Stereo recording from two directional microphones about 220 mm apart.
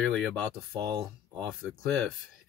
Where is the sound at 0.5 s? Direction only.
25° right (ahead or behind).